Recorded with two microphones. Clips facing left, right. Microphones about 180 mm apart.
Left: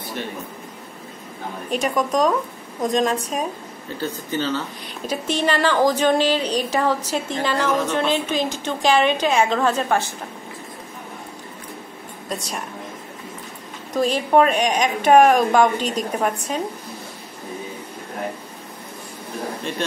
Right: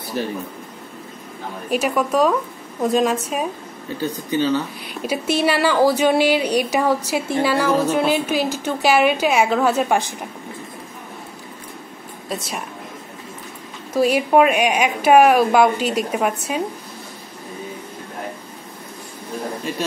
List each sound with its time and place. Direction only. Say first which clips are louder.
0.2 s a man's voice: right 6 dB; 35° right (ahead or behind)
1.7 s a woman's voice: right 2 dB; 5° right (ahead or behind)
12.3 s a woman's voice: right 1 dB; 5° right (ahead or behind)
13.9 s speech: right 2 dB; 10° right (ahead or behind)
19.7 s a woman's voice: right 2 dB; 5° right (ahead or behind)